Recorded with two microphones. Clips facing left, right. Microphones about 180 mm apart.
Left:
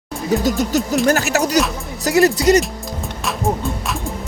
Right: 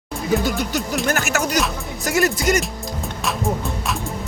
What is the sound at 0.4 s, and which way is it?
Speech, 40° left (ahead or behind).